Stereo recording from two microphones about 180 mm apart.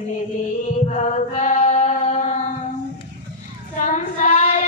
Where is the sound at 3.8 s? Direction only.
45° left (ahead or behind).